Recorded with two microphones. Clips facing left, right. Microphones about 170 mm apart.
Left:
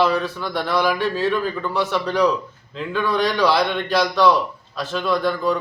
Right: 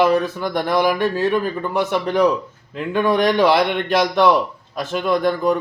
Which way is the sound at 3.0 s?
55° right (ahead or behind).